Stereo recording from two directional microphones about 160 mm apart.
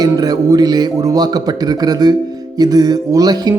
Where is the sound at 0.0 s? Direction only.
25° right (ahead or behind).